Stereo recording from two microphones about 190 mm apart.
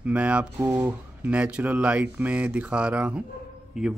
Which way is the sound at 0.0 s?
5° right (ahead or behind).